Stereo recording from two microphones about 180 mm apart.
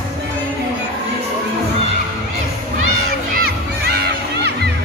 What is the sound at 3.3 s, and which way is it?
Crowd, 60° right (ahead or behind).